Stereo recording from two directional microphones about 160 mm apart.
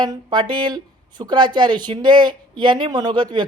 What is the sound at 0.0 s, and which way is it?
A man's voice, 25° right (ahead or behind).